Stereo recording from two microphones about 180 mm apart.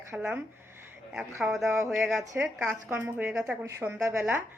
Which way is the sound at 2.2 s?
15° right (ahead or behind).